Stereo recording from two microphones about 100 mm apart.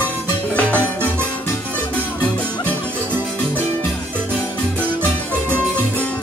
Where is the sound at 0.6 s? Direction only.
15° left (ahead or behind).